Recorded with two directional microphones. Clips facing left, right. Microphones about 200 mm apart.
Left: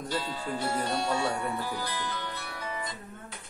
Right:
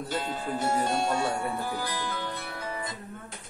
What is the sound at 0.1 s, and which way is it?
Speech, 50° right (ahead or behind).